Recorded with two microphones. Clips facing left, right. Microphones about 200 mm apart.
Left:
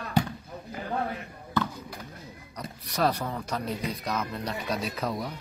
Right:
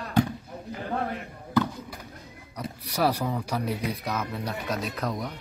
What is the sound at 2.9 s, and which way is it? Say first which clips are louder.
Speech: right 2 dB; 10° right (ahead or behind).